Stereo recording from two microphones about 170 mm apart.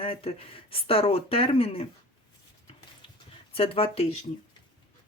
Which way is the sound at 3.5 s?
35° left (ahead or behind).